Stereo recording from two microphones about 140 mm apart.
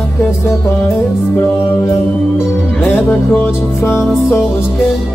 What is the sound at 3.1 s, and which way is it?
Music, 10° left (ahead or behind).